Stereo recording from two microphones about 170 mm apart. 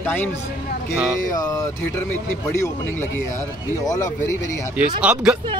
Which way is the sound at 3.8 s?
20° left (ahead or behind).